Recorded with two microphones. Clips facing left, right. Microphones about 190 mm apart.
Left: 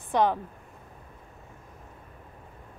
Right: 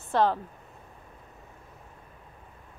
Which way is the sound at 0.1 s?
15° left (ahead or behind).